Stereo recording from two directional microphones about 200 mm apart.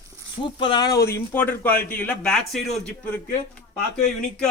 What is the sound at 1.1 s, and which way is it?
A man's voice, 10° left (ahead or behind).